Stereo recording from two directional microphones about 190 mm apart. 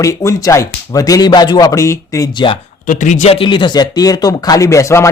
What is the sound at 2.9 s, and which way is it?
Speech, 40° left (ahead or behind).